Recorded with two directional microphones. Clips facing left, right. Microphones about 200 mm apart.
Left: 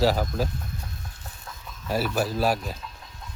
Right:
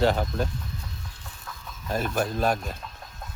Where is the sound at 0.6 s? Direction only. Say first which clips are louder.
Left 1 dB; 50° left (ahead or behind).